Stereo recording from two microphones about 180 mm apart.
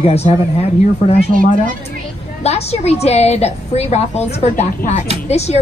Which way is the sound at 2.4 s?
35° left (ahead or behind).